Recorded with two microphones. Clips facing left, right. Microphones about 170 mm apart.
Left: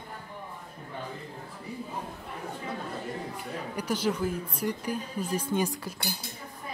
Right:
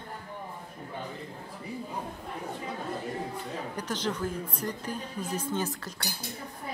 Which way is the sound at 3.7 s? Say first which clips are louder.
Left 5 dB; 10° left (ahead or behind).